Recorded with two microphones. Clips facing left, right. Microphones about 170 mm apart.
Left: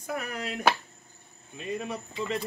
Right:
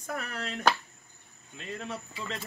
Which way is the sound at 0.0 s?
10° left (ahead or behind).